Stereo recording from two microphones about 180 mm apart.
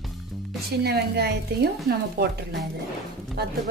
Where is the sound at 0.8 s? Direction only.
65° right (ahead or behind).